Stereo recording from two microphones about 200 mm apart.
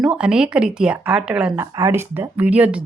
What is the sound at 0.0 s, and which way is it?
A woman's voice, 5° right (ahead or behind).